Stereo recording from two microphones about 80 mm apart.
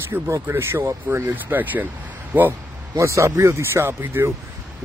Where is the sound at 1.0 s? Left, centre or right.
Right.